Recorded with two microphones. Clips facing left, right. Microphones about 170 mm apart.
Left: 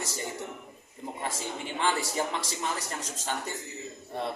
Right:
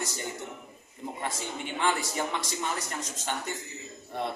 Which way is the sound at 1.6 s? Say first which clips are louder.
Even; 30° left (ahead or behind).